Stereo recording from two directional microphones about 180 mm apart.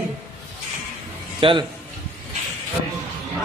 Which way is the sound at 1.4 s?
30° right (ahead or behind).